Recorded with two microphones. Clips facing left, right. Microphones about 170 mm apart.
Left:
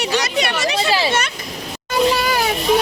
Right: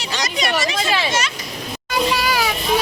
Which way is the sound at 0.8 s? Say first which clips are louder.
Left 3 dB; 35° left (ahead or behind).